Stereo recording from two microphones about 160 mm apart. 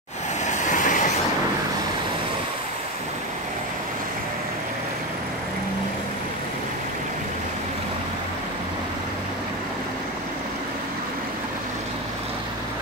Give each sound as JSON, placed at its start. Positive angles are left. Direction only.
{"t": 0.5, "sound": "vehicle", "side_deg": 50}